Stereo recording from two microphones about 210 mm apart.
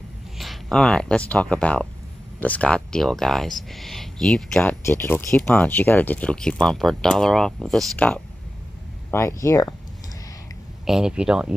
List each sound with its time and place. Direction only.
0.4 s speech: centre (ahead or behind)
10.9 s speech: 5° right (ahead or behind)